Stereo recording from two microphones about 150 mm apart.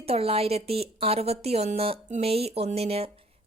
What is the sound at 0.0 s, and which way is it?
Speech, 40° right (ahead or behind).